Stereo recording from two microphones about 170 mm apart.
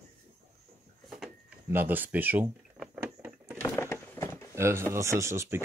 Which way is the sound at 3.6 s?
15° left (ahead or behind).